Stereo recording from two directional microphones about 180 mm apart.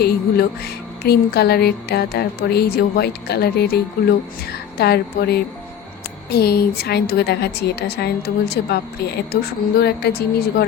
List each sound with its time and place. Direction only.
0.0 s speech: 60° left (ahead or behind)
4.8 s speech: 65° left (ahead or behind)